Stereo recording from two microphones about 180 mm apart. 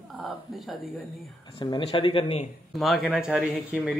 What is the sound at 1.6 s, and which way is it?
Speech, 25° left (ahead or behind).